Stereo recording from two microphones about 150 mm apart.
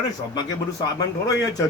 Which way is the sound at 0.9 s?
25° left (ahead or behind).